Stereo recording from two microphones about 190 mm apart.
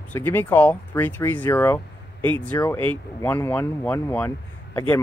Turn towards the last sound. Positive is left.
turn(degrees=15)  # may be behind; listen again after turning